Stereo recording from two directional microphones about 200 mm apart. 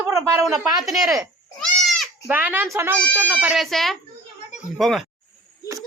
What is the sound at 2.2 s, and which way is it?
A woman's voice, 10° right (ahead or behind).